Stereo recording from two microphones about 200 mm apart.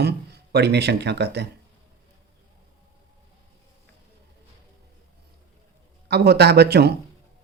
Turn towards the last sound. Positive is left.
turn(degrees=-55)  # may be behind; listen again after turning